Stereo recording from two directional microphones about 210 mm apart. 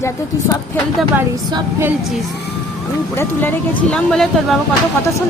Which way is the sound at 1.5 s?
20° right (ahead or behind).